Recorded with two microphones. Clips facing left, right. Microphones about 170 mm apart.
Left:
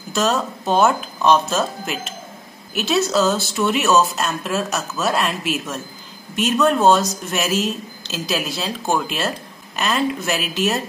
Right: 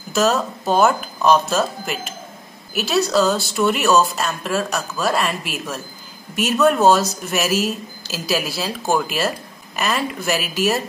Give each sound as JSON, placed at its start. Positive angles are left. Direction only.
{"t": 0.1, "sound": "speech", "side_deg": 0}